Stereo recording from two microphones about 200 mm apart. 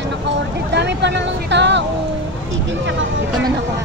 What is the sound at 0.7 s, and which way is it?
Speech, 60° right (ahead or behind).